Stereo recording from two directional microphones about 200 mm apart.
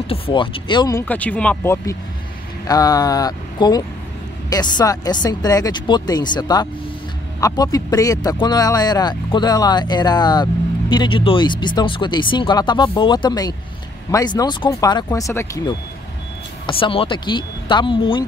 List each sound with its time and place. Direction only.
0.0 s speech: 25° left (ahead or behind)